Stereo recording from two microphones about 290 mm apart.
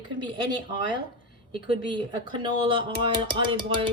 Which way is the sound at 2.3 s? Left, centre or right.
Centre.